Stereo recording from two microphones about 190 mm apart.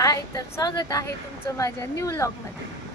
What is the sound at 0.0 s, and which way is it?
A woman's voice, 15° left (ahead or behind).